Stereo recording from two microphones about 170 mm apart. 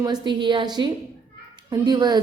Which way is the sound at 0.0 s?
25° right (ahead or behind).